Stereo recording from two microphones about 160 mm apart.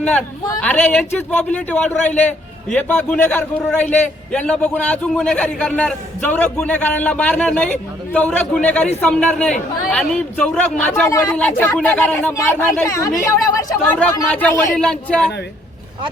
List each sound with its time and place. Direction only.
0.0 s a man's voice: 10° left (ahead or behind)
14.0 s a man's voice: 10° left (ahead or behind)